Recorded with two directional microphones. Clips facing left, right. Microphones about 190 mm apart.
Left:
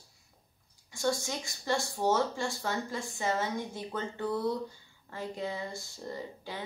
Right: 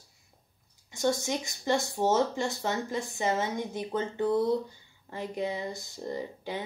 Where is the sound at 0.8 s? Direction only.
20° right (ahead or behind).